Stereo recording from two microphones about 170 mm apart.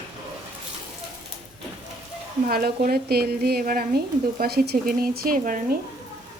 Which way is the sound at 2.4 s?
60° right (ahead or behind).